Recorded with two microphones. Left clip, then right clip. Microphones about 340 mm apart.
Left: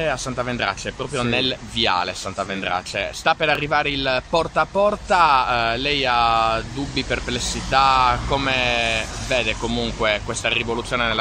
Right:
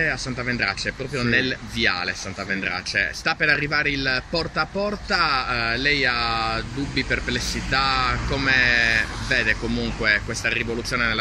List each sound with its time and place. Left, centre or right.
1.2 s speech: centre
2.0 s speech: left
3.3 s speech: centre
8.9 s speech: left
9.5 s speech: centre